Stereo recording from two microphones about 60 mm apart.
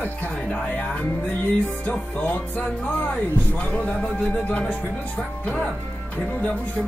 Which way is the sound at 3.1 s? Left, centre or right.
Left.